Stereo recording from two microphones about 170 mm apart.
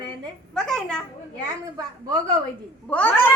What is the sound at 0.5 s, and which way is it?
Speech, 5° left (ahead or behind).